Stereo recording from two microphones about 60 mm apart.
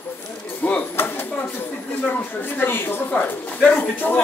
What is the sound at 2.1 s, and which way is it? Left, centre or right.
A man's voice, left.